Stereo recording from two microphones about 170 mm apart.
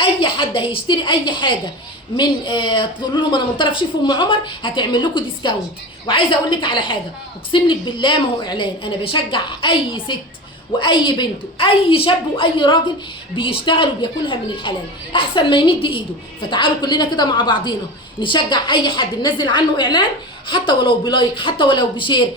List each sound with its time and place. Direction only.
0.0 s a woman's voice: 30° left (ahead or behind)